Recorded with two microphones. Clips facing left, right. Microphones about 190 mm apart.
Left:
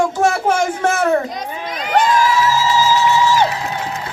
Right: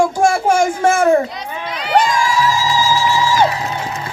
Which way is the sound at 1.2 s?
45° left (ahead or behind).